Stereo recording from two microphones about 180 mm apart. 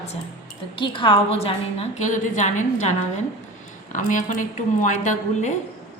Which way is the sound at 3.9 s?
45° left (ahead or behind).